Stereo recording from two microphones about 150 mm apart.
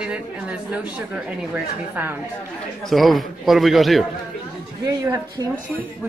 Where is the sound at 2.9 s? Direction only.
Centre (ahead or behind).